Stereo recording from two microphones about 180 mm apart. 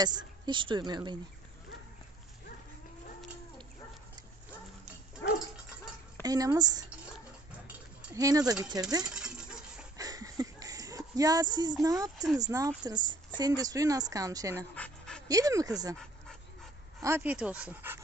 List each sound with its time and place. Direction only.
0.0 s speech: 25° right (ahead or behind)
6.2 s speech: 20° right (ahead or behind)
7.6 s cutlery: 20° right (ahead or behind)
9.1 s coin: 5° right (ahead or behind)
9.9 s a sound: 20° right (ahead or behind)
11.8 s speech: 20° right (ahead or behind)
14.8 s dog: 5° left (ahead or behind)
15.2 s speech: 20° right (ahead or behind)
17.0 s speech: 15° right (ahead or behind)